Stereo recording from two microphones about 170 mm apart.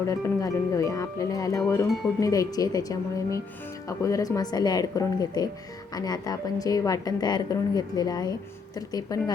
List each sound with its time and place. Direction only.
0.1 s a woman's voice: 20° left (ahead or behind)